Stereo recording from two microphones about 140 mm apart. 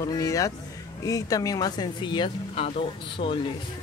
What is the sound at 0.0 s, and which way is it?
Speech, 25° left (ahead or behind).